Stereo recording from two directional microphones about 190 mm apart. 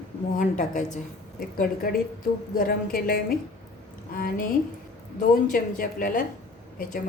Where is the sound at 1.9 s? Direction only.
50° left (ahead or behind).